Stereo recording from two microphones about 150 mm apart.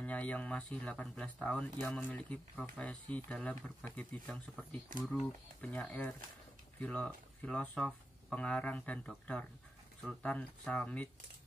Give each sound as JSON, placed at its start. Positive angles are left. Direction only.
{"t": 0.0, "sound": "speech", "side_deg": 10}
{"t": 10.2, "sound": "speech", "side_deg": 10}